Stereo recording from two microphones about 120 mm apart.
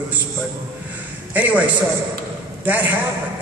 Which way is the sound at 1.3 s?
10° right (ahead or behind).